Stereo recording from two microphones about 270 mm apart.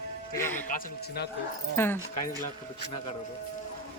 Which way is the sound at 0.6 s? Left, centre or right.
Left.